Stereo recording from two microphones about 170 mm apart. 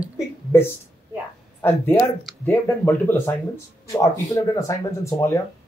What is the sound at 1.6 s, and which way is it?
Speech, 15° left (ahead or behind).